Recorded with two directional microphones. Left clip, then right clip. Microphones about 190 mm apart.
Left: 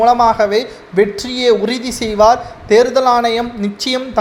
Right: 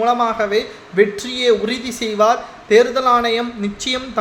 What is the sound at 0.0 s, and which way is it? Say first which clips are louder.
Speech: left 6 dB; 25° left (ahead or behind).